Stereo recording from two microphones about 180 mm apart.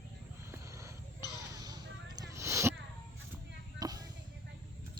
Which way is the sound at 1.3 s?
20° right (ahead or behind).